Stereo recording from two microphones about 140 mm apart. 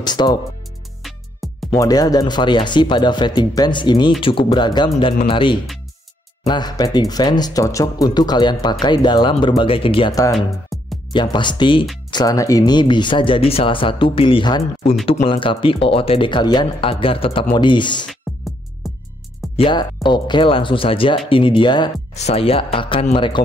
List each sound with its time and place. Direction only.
0.0 s speech: 30° left (ahead or behind)
1.0 s music: centre (ahead or behind)
1.8 s speech: 25° left (ahead or behind)
10.3 s music: centre (ahead or behind)
11.1 s speech: 35° left (ahead or behind)
18.3 s music: centre (ahead or behind)
19.5 s speech: 35° left (ahead or behind)
22.1 s speech: 50° left (ahead or behind)